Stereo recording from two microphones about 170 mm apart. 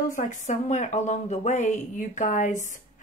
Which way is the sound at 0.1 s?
45° left (ahead or behind).